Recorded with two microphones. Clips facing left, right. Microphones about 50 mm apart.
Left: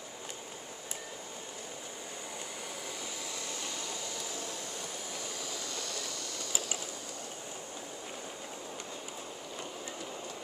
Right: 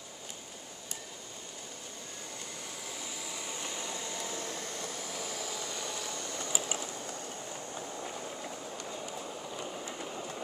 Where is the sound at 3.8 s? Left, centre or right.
Right.